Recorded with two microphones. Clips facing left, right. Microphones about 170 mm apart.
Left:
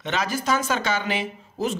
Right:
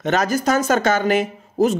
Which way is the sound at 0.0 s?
45° right (ahead or behind).